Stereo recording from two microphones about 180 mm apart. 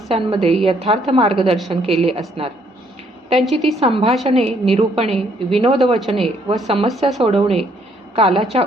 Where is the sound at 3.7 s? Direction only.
35° right (ahead or behind).